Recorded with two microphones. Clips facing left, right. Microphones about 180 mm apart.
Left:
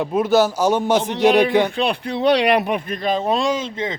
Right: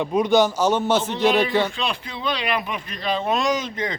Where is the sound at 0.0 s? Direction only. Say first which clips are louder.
Left 1 dB; 5° left (ahead or behind).